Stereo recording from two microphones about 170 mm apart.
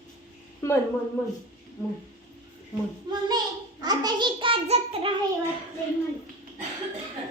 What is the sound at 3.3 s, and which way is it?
A child's voice, 25° right (ahead or behind).